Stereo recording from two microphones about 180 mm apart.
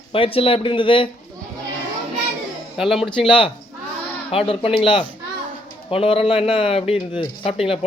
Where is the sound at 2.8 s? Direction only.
Centre (ahead or behind).